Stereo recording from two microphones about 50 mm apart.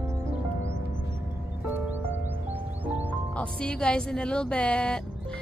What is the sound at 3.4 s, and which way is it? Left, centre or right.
Speech, left.